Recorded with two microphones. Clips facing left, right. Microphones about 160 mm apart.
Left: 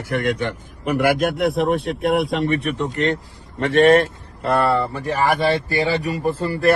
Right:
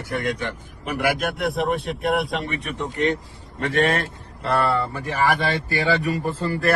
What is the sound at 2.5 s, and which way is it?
Speech, 65° left (ahead or behind).